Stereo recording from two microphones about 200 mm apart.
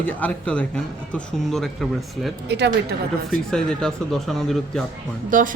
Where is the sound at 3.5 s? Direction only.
5° left (ahead or behind).